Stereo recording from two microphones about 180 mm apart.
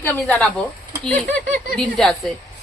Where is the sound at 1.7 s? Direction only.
Centre (ahead or behind).